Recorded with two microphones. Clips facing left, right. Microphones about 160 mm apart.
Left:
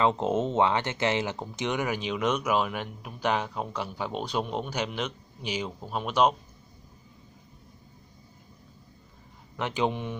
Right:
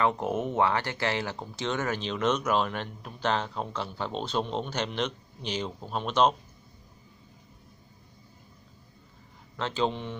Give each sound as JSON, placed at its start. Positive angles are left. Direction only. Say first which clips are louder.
{"t": 0.0, "sound": "speech", "louder": "left 2 dB", "side_deg": 20}
{"t": 9.6, "sound": "speech", "louder": "left 1 dB", "side_deg": 15}